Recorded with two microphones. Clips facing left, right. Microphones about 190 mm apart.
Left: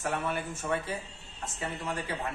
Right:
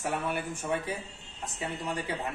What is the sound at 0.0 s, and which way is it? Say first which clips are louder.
Speech: even; 10° right (ahead or behind).